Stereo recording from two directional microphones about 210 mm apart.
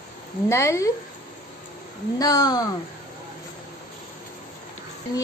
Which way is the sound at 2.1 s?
15° left (ahead or behind).